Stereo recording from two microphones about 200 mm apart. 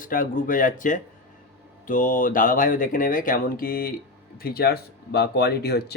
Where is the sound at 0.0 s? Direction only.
45° left (ahead or behind).